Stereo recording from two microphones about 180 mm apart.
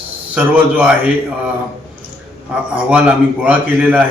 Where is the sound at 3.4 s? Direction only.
10° right (ahead or behind).